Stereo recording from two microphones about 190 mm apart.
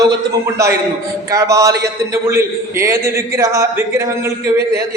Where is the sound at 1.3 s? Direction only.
15° right (ahead or behind).